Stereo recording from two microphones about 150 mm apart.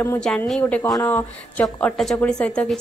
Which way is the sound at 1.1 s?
10° left (ahead or behind).